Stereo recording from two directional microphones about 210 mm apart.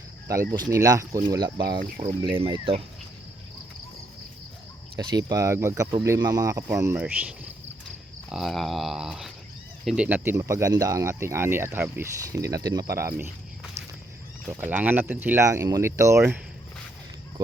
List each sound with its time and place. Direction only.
0.3 s speech: 15° right (ahead or behind)
4.9 s speech: 20° right (ahead or behind)
14.5 s speech: 10° right (ahead or behind)